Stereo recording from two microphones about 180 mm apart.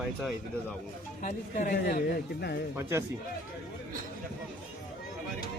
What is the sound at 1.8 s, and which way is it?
Speech, 60° left (ahead or behind).